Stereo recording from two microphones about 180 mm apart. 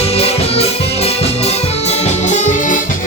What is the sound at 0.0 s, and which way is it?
Music, 35° left (ahead or behind).